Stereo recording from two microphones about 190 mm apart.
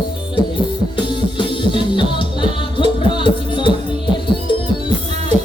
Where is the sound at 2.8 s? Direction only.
25° left (ahead or behind).